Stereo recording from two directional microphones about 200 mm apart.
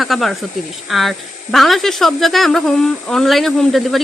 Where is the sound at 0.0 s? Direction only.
Centre (ahead or behind).